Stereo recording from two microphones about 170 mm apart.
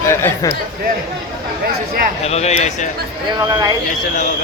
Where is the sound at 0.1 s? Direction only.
15° left (ahead or behind).